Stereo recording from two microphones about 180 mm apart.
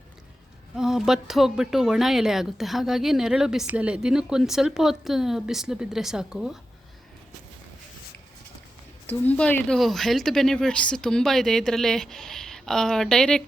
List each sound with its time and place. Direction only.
0.8 s speech: centre (ahead or behind)
9.0 s speech: 10° left (ahead or behind)